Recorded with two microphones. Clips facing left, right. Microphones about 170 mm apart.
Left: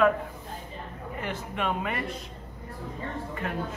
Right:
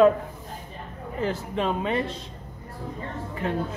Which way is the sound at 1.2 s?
30° right (ahead or behind).